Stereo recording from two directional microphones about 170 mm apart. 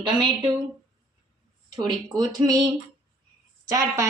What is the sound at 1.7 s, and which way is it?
Speech, 25° right (ahead or behind).